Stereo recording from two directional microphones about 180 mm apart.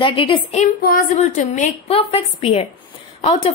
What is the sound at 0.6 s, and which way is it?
A woman's voice, 50° left (ahead or behind).